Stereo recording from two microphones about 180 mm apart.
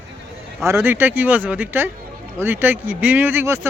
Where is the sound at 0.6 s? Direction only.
15° right (ahead or behind).